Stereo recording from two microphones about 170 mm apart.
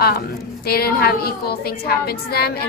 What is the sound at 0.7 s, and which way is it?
A woman's voice, 65° left (ahead or behind).